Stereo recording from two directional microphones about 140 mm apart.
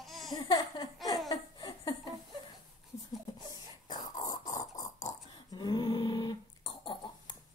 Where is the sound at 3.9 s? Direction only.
30° left (ahead or behind).